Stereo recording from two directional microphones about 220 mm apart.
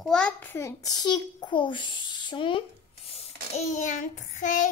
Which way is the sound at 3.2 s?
30° left (ahead or behind).